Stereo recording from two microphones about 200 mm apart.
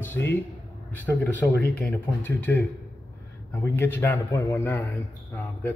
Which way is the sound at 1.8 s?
10° left (ahead or behind).